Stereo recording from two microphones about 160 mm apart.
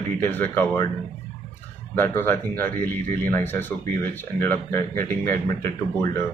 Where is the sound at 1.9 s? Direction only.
15° left (ahead or behind).